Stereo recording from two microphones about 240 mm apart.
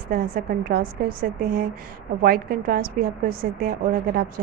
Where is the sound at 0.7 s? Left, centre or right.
Right.